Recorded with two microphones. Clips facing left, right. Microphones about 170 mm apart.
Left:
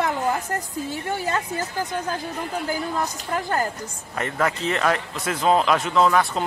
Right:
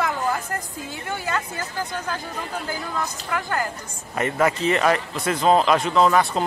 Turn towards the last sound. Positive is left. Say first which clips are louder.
# right 1 dB
turn(degrees=0)  # may be behind; listen again after turning